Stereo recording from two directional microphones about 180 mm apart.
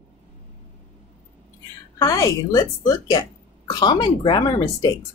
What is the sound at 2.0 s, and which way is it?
Speech, 20° left (ahead or behind).